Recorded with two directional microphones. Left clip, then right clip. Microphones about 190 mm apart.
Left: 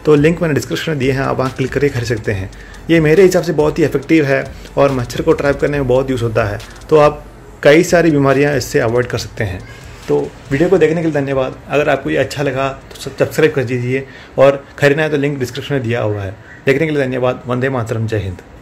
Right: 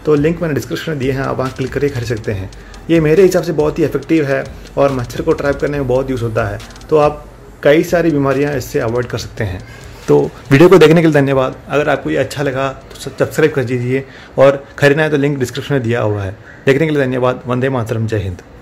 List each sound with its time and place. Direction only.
0.0 s speech: 15° left (ahead or behind)
8.9 s speech: 5° left (ahead or behind)
10.1 s a man's voice: 30° right (ahead or behind)
10.5 s a man's voice: 45° right (ahead or behind)
11.7 s a man's voice: 5° right (ahead or behind)